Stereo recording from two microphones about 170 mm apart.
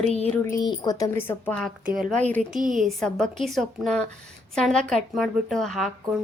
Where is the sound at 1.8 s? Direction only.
5° right (ahead or behind).